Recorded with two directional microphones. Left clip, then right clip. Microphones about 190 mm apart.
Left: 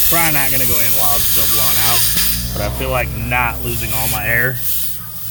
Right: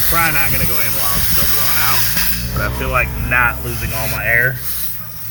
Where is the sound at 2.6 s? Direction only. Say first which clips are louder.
Right 2 dB; 45° left (ahead or behind).